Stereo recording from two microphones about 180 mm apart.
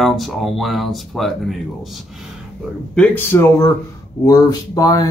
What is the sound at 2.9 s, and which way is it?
Speech, 10° left (ahead or behind).